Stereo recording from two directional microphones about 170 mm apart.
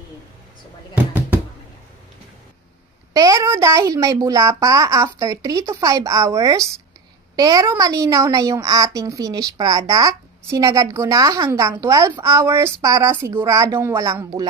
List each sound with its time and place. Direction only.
3.1 s a woman's voice: 20° right (ahead or behind)